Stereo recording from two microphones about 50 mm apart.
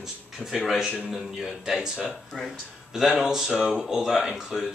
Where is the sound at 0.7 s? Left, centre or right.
Centre.